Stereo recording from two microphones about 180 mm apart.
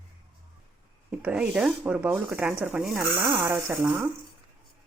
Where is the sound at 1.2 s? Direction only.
5° right (ahead or behind).